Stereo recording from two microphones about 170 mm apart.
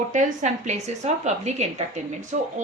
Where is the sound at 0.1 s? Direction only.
45° right (ahead or behind).